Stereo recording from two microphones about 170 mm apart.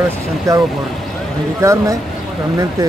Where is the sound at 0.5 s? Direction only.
20° right (ahead or behind).